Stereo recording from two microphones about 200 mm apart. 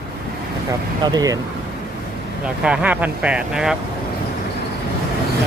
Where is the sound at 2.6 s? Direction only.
5° right (ahead or behind).